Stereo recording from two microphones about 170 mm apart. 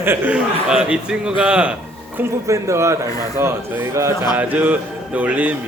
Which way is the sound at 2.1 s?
15° right (ahead or behind).